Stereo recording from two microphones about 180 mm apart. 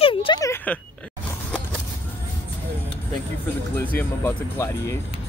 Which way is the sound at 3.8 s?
10° left (ahead or behind).